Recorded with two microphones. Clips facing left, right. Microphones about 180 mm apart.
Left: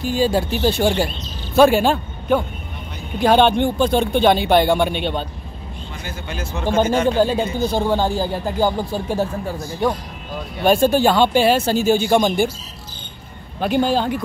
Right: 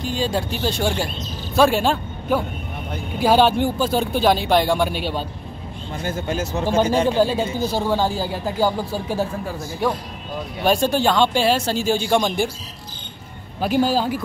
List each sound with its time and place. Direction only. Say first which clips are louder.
0.0 s speech: left 5 dB; 5° left (ahead or behind)
6.0 s speech: right 6 dB; 45° right (ahead or behind)
7.1 s speech: left 1 dB; 5° right (ahead or behind)
10.6 s speech: left 4 dB; centre (ahead or behind)
13.6 s speech: left 1 dB; 5° right (ahead or behind)